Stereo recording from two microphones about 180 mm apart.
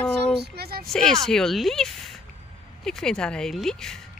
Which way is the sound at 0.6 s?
60° right (ahead or behind).